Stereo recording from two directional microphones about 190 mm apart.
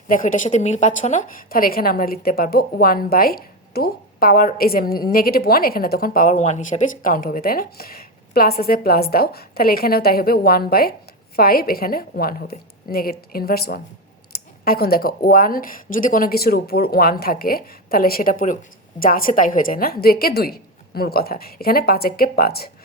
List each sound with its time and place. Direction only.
0.1 s a woman's voice: 45° left (ahead or behind)